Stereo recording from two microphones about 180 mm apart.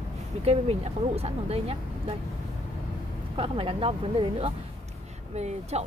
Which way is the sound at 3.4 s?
30° right (ahead or behind).